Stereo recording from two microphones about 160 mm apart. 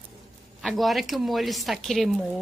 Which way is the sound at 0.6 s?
Centre (ahead or behind).